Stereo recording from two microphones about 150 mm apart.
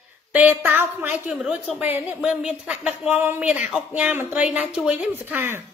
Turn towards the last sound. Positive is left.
turn(degrees=-15)  # may be behind; listen again after turning